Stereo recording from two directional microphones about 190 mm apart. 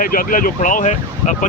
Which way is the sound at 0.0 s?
45° left (ahead or behind).